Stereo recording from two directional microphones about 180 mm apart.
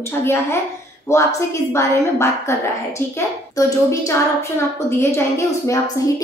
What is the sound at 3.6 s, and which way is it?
A woman's voice, 15° left (ahead or behind).